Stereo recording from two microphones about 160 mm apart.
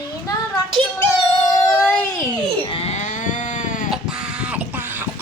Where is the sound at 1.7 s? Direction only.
15° left (ahead or behind).